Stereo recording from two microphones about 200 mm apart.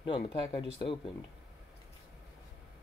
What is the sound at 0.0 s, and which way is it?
Speech, 25° left (ahead or behind).